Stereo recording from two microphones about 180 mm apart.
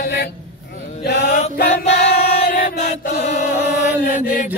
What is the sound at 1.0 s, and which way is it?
Mantra, 65° left (ahead or behind).